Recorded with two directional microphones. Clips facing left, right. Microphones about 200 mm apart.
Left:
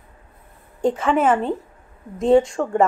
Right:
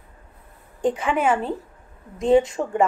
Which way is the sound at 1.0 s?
Centre (ahead or behind).